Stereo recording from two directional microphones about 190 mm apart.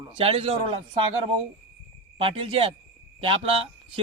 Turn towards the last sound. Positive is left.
turn(degrees=-30)  # may be behind; listen again after turning